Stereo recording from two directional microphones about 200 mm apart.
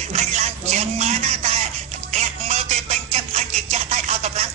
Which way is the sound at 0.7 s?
35° right (ahead or behind).